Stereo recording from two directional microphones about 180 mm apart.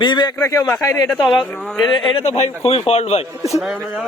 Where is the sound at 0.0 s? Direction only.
25° left (ahead or behind).